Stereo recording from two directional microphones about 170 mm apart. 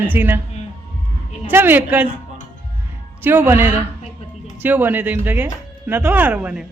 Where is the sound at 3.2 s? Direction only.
10° right (ahead or behind).